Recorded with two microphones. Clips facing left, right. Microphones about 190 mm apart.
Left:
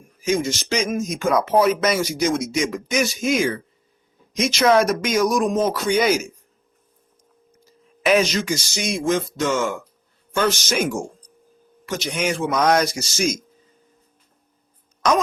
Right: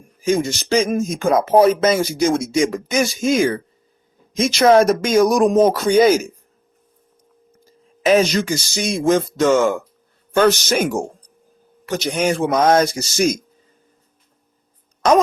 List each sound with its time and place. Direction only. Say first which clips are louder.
0.4 s speech: right 5 dB; 35° right (ahead or behind)
1.0 s speech: right 3 dB; 50° right (ahead or behind)
1.3 s speech: right 4 dB; 25° right (ahead or behind)
4.6 s speech: right 4 dB; 30° right (ahead or behind)
6.1 s speech: right 5 dB; 55° right (ahead or behind)
7.5 s a sound: even; 50° right (ahead or behind)
8.1 s speech: right 3 dB; 35° right (ahead or behind)
10.3 s a man's voice: right 6 dB; 60° right (ahead or behind)
11.9 s speech: right 5 dB; 35° right (ahead or behind)
12.9 s a man's voice: right 5 dB; 55° right (ahead or behind)